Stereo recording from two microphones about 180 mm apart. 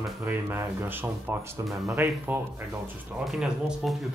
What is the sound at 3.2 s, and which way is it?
Speech, centre (ahead or behind).